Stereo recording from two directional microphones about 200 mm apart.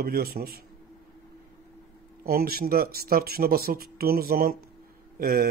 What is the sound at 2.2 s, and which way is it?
Speech, 50° right (ahead or behind).